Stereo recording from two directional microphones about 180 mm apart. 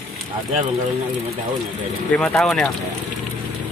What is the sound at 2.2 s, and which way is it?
Speech, centre (ahead or behind).